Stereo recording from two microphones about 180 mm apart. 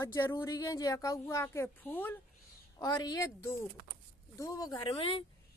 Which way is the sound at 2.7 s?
20° left (ahead or behind).